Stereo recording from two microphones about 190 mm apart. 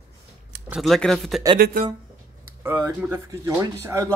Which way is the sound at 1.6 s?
45° right (ahead or behind).